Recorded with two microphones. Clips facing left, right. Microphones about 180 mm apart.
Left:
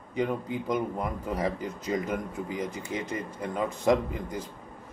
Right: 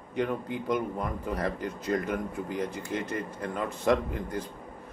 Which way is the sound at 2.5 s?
55° right (ahead or behind).